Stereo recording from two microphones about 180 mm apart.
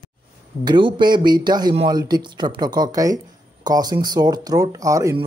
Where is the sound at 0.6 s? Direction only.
25° right (ahead or behind).